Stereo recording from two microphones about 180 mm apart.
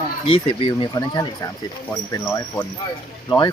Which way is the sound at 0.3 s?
25° left (ahead or behind).